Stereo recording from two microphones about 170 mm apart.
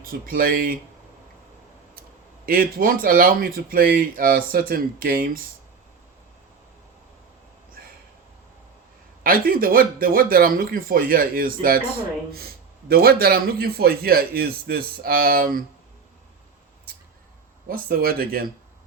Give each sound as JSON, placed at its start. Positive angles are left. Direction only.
{"t": 0.1, "sound": "a man's voice", "side_deg": -60}
{"t": 2.5, "sound": "a man's voice", "side_deg": -60}
{"t": 9.2, "sound": "a man's voice", "side_deg": -55}
{"t": 17.7, "sound": "a man's voice", "side_deg": -60}